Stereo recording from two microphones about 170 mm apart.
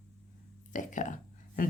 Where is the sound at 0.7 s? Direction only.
50° left (ahead or behind).